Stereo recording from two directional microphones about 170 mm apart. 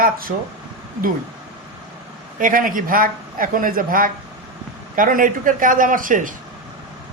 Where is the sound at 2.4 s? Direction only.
55° right (ahead or behind).